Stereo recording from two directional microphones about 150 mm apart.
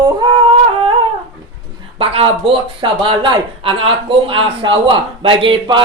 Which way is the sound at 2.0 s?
40° right (ahead or behind).